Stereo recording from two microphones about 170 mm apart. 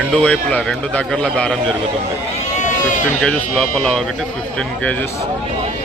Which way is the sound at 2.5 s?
45° left (ahead or behind).